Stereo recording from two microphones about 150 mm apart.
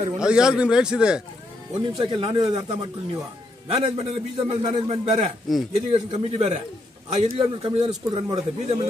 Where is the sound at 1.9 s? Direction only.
35° right (ahead or behind).